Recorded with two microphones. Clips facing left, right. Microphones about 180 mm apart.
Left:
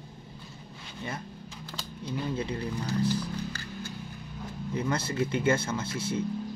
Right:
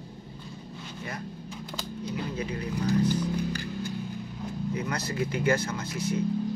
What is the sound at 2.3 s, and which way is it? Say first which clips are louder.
Speech: left 1 dB; 30° left (ahead or behind).